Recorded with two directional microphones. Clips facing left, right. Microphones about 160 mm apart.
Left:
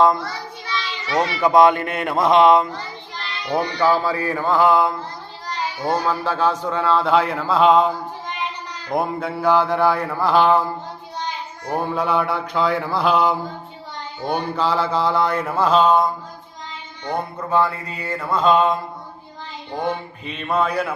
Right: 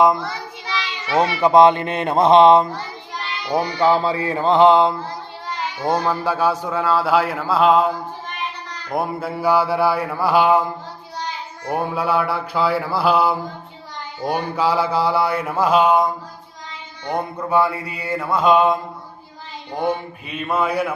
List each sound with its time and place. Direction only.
0.0 s mantra: 15° right (ahead or behind)
1.1 s speech: 25° right (ahead or behind)
3.5 s speech: 20° right (ahead or behind)
5.9 s a man's voice: 10° right (ahead or behind)
8.9 s mantra: 5° right (ahead or behind)
11.7 s mantra: 5° right (ahead or behind)
17.5 s mantra: 10° right (ahead or behind)
20.2 s mantra: 10° right (ahead or behind)